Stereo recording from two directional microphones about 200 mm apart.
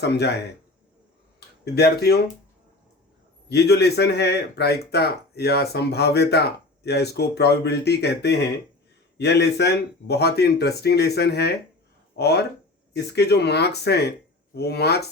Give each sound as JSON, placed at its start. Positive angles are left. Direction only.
{"t": 0.0, "sound": "speech", "side_deg": 55}
{"t": 1.7, "sound": "speech", "side_deg": 55}
{"t": 3.5, "sound": "speech", "side_deg": 55}